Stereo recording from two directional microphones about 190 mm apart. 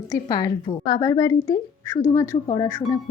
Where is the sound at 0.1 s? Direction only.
20° left (ahead or behind).